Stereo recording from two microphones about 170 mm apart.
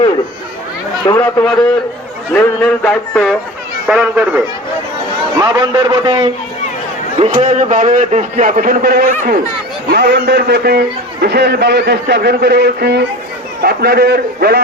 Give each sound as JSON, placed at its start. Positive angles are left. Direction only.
{"t": 1.0, "sound": "speech", "side_deg": 15}
{"t": 3.8, "sound": "speech", "side_deg": -5}
{"t": 5.4, "sound": "a man's voice", "side_deg": -25}
{"t": 7.4, "sound": "a man's voice", "side_deg": -45}
{"t": 9.9, "sound": "a man's voice", "side_deg": -70}
{"t": 13.6, "sound": "a man's voice", "side_deg": -65}